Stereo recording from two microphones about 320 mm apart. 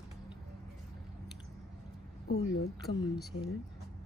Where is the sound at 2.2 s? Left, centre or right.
Left.